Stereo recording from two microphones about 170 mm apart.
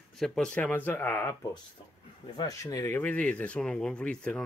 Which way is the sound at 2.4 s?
20° left (ahead or behind).